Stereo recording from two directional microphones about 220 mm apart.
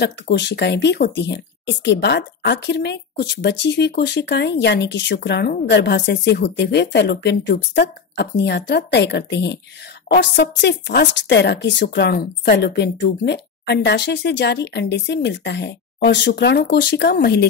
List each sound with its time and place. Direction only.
0.0 s speech: 50° left (ahead or behind)